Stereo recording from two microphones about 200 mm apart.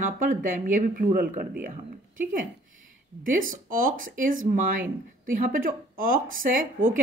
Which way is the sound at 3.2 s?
45° right (ahead or behind).